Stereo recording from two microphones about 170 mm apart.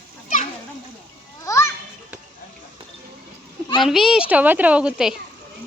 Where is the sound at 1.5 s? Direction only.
15° left (ahead or behind).